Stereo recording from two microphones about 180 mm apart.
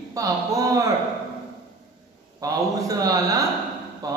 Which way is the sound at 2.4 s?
20° right (ahead or behind).